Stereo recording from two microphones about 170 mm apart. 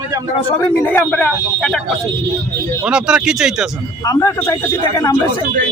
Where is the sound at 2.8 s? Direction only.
5° right (ahead or behind).